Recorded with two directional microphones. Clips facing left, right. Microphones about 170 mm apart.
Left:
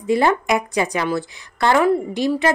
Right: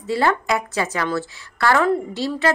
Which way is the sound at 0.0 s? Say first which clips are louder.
Left 3 dB; 15° left (ahead or behind).